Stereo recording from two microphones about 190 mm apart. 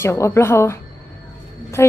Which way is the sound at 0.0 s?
15° left (ahead or behind).